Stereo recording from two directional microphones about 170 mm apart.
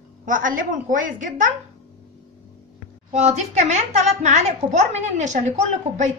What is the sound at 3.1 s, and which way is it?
A woman's voice, 40° right (ahead or behind).